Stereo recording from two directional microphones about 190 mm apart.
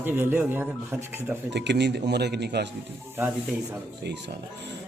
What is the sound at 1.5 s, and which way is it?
Speech, 65° right (ahead or behind).